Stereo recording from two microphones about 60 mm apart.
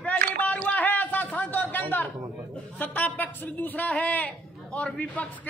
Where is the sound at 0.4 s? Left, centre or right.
Left.